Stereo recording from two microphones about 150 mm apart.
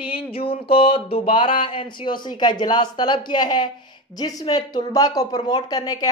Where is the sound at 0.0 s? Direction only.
40° left (ahead or behind).